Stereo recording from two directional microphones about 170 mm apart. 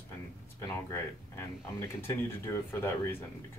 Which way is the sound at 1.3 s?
15° left (ahead or behind).